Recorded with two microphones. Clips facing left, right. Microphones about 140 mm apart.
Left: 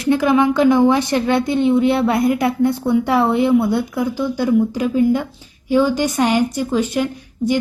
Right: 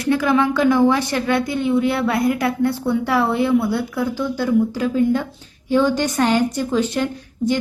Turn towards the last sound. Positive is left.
turn(degrees=0)  # may be behind; listen again after turning